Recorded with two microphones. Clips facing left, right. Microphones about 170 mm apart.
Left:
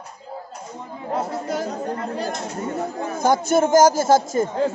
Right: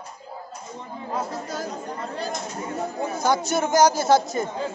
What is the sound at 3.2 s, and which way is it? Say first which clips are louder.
A man's voice: left 6 dB; 50° left (ahead or behind).